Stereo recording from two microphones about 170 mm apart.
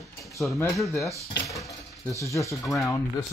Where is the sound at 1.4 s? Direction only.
20° left (ahead or behind).